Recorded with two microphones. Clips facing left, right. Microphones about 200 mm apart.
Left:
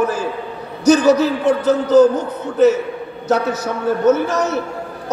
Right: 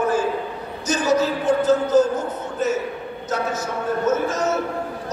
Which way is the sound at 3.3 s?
65° left (ahead or behind).